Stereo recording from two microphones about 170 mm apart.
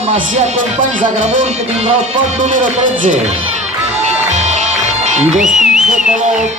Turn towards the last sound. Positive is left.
turn(degrees=-5)  # may be behind; listen again after turning